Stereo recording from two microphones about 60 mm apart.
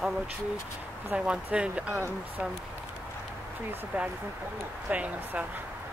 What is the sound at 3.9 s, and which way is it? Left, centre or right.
Speech, right.